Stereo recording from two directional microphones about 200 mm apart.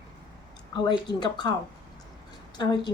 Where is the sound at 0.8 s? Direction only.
20° left (ahead or behind).